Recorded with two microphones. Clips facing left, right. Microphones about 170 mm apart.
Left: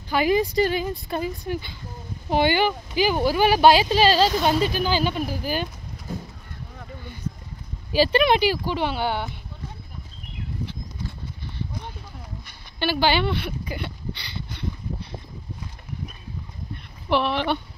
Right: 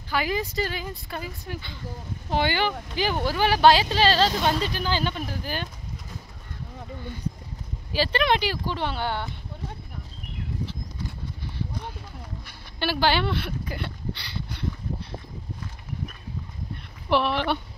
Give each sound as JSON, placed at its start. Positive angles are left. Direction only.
{"t": 0.1, "sound": "speech", "side_deg": 20}
{"t": 7.9, "sound": "speech", "side_deg": 15}
{"t": 12.7, "sound": "a sound", "side_deg": 0}
{"t": 17.1, "sound": "speech", "side_deg": -5}